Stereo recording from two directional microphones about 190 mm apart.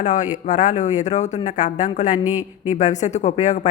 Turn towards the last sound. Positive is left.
turn(degrees=40)  # may be behind; listen again after turning